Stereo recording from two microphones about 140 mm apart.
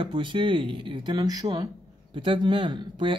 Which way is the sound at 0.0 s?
35° right (ahead or behind).